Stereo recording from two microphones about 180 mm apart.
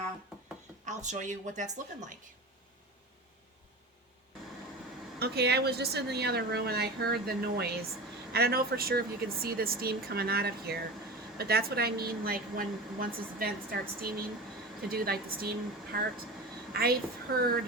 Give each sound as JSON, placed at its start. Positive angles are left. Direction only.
{"t": 0.9, "sound": "a woman's voice", "side_deg": -40}
{"t": 5.2, "sound": "a woman's voice", "side_deg": -65}
{"t": 17.3, "sound": "a woman's voice", "side_deg": -55}